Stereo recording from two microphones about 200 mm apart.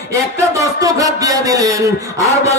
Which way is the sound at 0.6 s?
15° right (ahead or behind).